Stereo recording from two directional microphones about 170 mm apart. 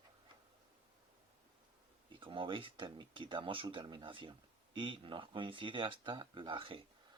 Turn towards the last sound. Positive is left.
turn(degrees=-30)  # may be behind; listen again after turning